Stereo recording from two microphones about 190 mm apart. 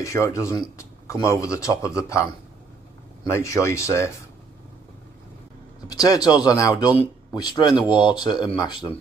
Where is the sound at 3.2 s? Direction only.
15° left (ahead or behind).